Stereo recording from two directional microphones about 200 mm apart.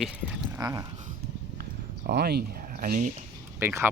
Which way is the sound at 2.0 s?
50° right (ahead or behind).